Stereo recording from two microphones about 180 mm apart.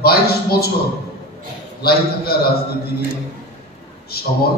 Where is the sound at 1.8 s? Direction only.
60° left (ahead or behind).